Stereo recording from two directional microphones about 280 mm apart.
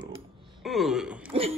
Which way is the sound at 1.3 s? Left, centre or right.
Right.